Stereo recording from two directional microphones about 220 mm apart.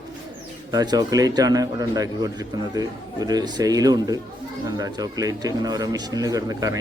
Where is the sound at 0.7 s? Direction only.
15° right (ahead or behind).